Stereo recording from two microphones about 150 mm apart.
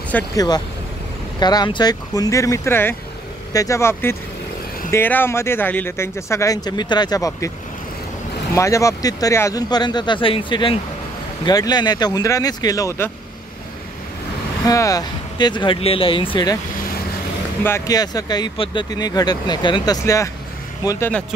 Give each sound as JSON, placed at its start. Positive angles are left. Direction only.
{"t": 0.1, "sound": "speech", "side_deg": 10}
{"t": 1.4, "sound": "speech", "side_deg": 30}
{"t": 8.5, "sound": "speech", "side_deg": 20}
{"t": 14.7, "sound": "speech", "side_deg": 25}
{"t": 17.6, "sound": "speech", "side_deg": 20}